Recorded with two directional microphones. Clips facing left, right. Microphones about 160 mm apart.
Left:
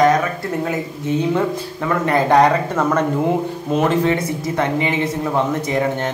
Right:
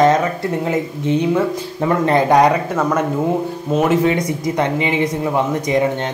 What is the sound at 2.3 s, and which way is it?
Speech, 10° right (ahead or behind).